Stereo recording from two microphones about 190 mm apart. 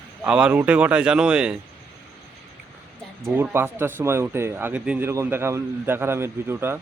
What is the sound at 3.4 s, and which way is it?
Speech, 10° right (ahead or behind).